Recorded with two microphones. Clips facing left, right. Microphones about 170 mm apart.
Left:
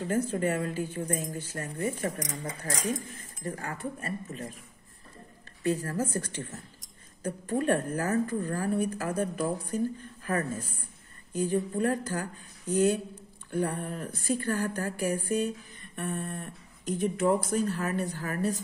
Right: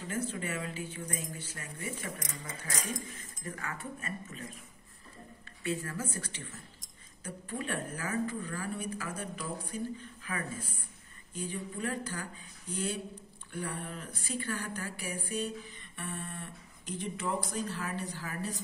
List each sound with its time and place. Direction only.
0.0 s speech: 45° left (ahead or behind)
5.6 s speech: 40° left (ahead or behind)